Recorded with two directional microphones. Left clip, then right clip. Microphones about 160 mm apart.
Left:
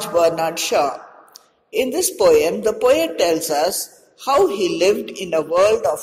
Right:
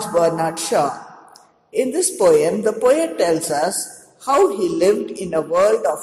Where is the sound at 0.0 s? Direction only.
20° left (ahead or behind).